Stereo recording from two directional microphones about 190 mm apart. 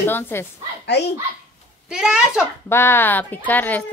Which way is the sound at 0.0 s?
10° left (ahead or behind).